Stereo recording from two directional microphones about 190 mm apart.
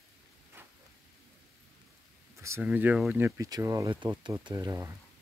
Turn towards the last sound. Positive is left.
turn(degrees=-15)  # may be behind; listen again after turning